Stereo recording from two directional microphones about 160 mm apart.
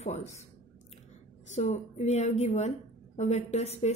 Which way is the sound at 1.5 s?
45° left (ahead or behind).